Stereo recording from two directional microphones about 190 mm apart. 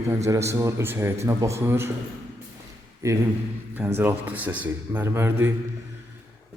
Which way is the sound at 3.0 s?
15° right (ahead or behind).